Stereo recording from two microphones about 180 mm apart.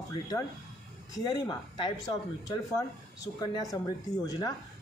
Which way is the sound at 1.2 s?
20° left (ahead or behind).